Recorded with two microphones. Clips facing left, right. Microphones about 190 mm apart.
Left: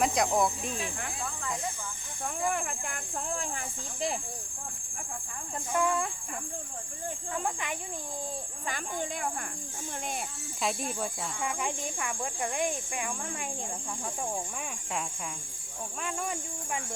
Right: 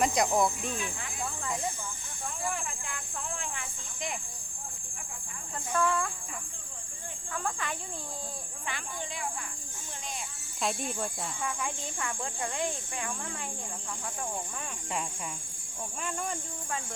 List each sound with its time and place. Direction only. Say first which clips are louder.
0.0 s speech: even; centre (ahead or behind)
2.4 s a sound: left 5 dB; 55° left (ahead or behind)
5.7 s speech: left 1 dB; 15° left (ahead or behind)
7.3 s speech: even; 20° left (ahead or behind)
8.6 s speech: left 4 dB; 45° left (ahead or behind)
10.6 s speech: even; centre (ahead or behind)
11.3 s speech: left 3 dB; 20° left (ahead or behind)
16.0 s speech: left 1 dB; centre (ahead or behind)